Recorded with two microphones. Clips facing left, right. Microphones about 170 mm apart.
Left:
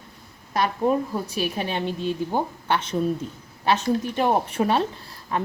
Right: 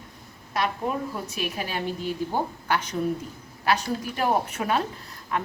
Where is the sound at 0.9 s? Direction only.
35° left (ahead or behind).